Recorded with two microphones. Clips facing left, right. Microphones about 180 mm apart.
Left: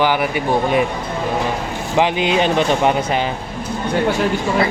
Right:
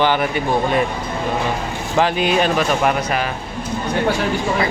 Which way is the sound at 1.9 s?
20° left (ahead or behind).